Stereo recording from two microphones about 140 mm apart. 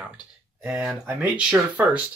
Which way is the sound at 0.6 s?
5° right (ahead or behind).